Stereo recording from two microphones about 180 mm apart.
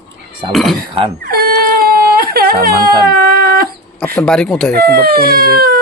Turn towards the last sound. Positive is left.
turn(degrees=-55)  # may be behind; listen again after turning